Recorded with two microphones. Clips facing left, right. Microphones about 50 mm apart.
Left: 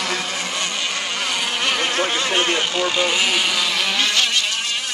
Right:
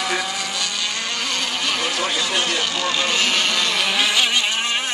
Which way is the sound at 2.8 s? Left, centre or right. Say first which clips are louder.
Left 1 dB; centre.